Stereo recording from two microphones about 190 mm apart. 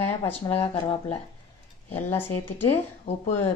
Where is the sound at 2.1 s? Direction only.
10° left (ahead or behind).